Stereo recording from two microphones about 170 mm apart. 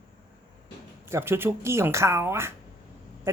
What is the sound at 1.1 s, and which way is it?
Speech, 15° right (ahead or behind).